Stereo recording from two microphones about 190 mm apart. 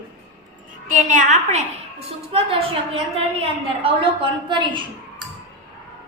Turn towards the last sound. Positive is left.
turn(degrees=-25)  # may be behind; listen again after turning